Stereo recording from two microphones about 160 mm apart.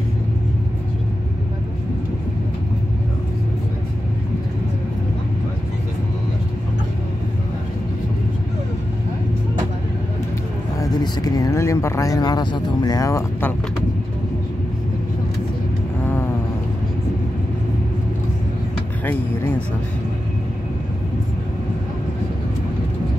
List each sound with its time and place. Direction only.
10.8 s speech: 25° left (ahead or behind)